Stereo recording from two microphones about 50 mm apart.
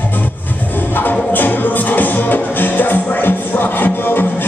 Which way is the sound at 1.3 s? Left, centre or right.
Left.